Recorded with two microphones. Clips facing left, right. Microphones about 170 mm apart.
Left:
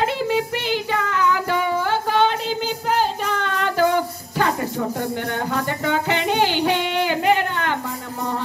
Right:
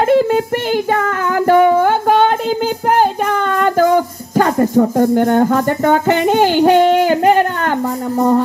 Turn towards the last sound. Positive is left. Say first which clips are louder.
# right 7 dB
turn(degrees=-45)  # may be behind; listen again after turning